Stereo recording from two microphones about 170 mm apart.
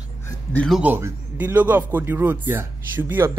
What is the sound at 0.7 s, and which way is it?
A man's voice, 5° right (ahead or behind).